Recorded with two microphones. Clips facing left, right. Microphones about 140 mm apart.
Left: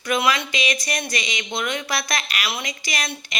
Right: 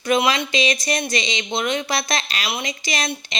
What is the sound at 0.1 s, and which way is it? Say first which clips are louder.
Speech: right 3 dB; 25° right (ahead or behind).